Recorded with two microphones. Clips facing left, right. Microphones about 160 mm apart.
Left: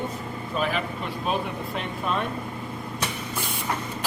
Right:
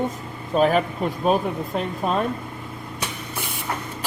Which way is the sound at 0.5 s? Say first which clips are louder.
Right 9 dB; 40° right (ahead or behind).